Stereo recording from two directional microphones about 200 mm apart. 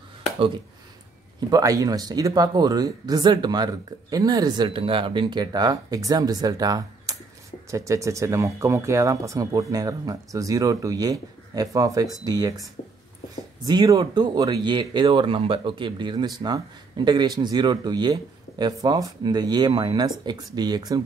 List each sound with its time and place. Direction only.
1.5 s speech: 15° right (ahead or behind)
13.7 s speech: 20° right (ahead or behind)